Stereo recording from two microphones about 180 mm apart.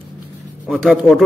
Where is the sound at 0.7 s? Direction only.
Centre (ahead or behind).